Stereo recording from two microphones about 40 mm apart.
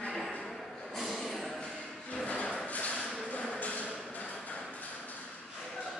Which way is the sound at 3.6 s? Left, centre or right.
Left.